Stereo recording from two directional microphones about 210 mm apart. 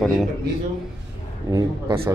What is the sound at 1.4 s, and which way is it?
Speech, 15° right (ahead or behind).